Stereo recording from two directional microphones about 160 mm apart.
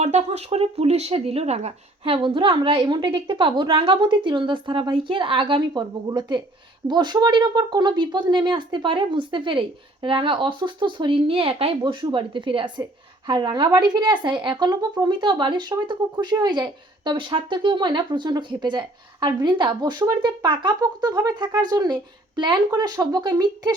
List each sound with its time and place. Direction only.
0.0 s speech: 45° right (ahead or behind); by 23.7 s 25° right (ahead or behind)